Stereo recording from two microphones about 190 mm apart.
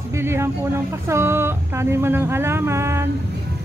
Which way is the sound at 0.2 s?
15° right (ahead or behind).